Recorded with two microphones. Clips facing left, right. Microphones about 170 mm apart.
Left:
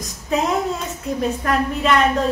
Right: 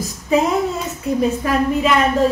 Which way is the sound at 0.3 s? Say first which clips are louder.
Right 3 dB; centre (ahead or behind).